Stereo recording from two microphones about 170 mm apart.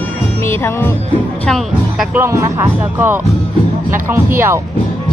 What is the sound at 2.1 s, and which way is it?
Speech, 15° right (ahead or behind).